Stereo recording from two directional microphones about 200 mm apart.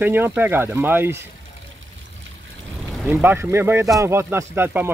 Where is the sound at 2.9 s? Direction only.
5° right (ahead or behind).